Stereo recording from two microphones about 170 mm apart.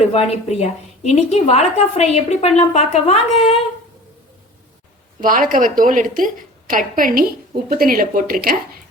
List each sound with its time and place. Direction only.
0.0 s a woman's voice: 35° left (ahead or behind)
5.2 s a woman's voice: 55° right (ahead or behind)